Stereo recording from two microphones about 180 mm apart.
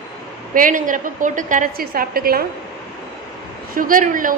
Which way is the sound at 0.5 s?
45° right (ahead or behind).